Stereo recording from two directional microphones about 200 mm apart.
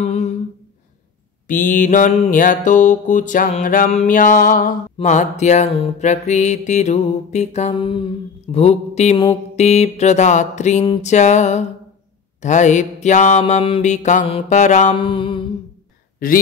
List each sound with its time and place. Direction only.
0.0 s humming: 35° left (ahead or behind)
1.5 s mantra: 40° left (ahead or behind)
15.0 s mantra: 25° left (ahead or behind)
16.2 s speech: 45° left (ahead or behind)